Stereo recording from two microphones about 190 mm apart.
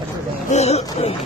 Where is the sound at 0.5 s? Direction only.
35° left (ahead or behind).